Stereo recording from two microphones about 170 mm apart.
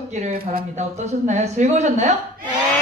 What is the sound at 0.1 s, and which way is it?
Speech, 45° right (ahead or behind).